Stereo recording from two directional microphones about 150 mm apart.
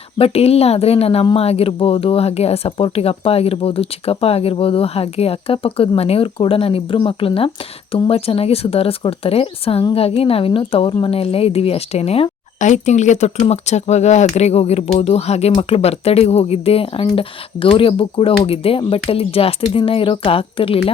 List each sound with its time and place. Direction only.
0.2 s speech: 40° left (ahead or behind)